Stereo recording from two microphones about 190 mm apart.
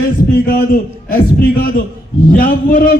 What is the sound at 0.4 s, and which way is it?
A man's voice, 50° left (ahead or behind).